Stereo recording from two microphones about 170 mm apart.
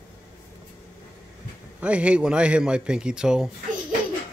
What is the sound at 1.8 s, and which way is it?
Speech, 5° right (ahead or behind).